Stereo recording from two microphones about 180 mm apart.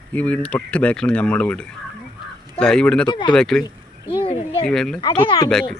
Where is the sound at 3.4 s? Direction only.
5° left (ahead or behind).